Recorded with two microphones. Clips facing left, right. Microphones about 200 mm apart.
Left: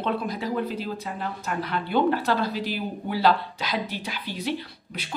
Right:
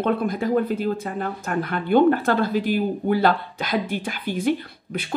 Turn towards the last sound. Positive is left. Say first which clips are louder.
# right 4 dB
turn(degrees=-50)  # may be behind; listen again after turning